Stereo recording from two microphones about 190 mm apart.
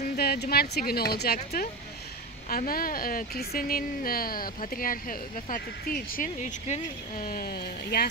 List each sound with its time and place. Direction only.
0.2 s speech: 55° left (ahead or behind)